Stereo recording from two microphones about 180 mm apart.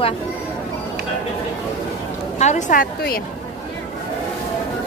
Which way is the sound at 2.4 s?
40° left (ahead or behind).